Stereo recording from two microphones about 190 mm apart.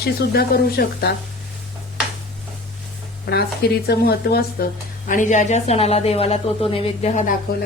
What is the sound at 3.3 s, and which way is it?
Speech, 55° left (ahead or behind).